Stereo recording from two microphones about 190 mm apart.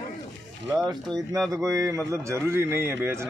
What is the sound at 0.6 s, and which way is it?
A man's voice, 20° right (ahead or behind).